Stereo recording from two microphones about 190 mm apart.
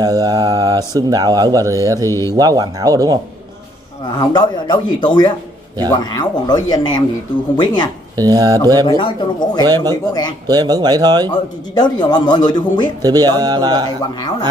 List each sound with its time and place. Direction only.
0.0 s speech: 20° right (ahead or behind)
2.0 s speech: 15° left (ahead or behind)
2.3 s speech: 20° right (ahead or behind)
4.0 s a man's voice: 20° left (ahead or behind)
8.2 s speech: 20° right (ahead or behind)
8.8 s a man's voice: 25° left (ahead or behind)
9.6 s speech: 20° right (ahead or behind)
11.2 s a man's voice: 20° left (ahead or behind)
13.0 s speech: 20° right (ahead or behind)